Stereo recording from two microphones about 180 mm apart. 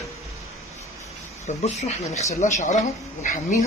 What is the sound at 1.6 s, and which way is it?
Speech, 35° left (ahead or behind).